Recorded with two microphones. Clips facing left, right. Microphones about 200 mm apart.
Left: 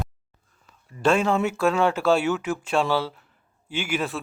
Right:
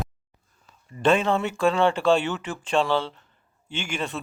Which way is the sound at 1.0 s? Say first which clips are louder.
Even; centre (ahead or behind).